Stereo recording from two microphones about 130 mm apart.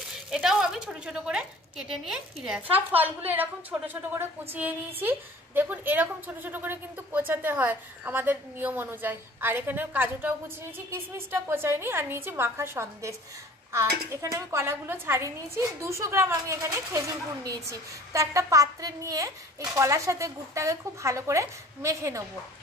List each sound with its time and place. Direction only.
0.3 s a woman's voice: 5° right (ahead or behind); by 22.2 s 25° right (ahead or behind)